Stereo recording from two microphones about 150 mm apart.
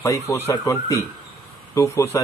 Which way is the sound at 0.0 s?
20° left (ahead or behind).